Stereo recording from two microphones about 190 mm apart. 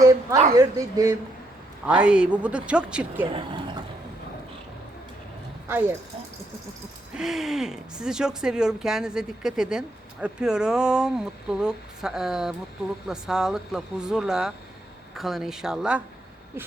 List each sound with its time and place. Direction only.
0.0 s a sound: 20° right (ahead or behind)
0.5 s speech: 20° right (ahead or behind)
1.9 s speech: 5° right (ahead or behind)
3.2 s speech: 30° right (ahead or behind)
7.1 s speech: 5° right (ahead or behind)